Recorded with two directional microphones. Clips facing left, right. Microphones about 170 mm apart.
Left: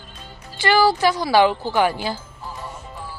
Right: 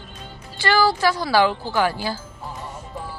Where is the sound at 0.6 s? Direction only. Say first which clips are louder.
Left 2 dB; 15° left (ahead or behind).